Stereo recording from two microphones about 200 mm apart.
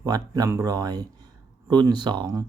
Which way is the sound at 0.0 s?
20° right (ahead or behind).